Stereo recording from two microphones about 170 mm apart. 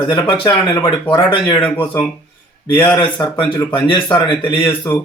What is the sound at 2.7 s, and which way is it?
Speech, 10° left (ahead or behind).